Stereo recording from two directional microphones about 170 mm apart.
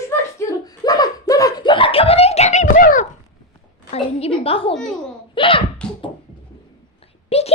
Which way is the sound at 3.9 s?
35° left (ahead or behind).